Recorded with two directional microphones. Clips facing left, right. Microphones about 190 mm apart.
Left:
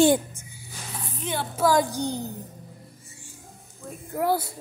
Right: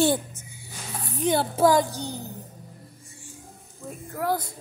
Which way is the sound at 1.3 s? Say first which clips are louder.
Right 7 dB; 35° right (ahead or behind).